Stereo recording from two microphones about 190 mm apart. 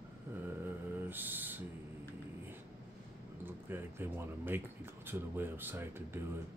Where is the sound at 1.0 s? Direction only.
10° right (ahead or behind).